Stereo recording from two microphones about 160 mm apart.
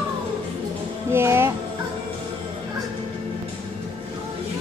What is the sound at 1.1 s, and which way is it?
Music, 15° right (ahead or behind).